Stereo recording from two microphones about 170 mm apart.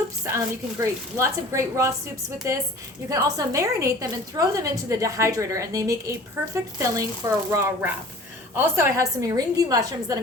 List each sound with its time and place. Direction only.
0.3 s a woman's voice: 15° right (ahead or behind)
3.1 s a woman's voice: 20° right (ahead or behind)